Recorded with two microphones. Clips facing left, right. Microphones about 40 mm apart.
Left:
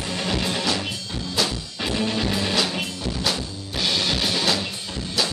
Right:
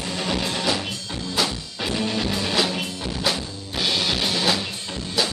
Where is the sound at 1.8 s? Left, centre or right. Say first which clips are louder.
Even; centre.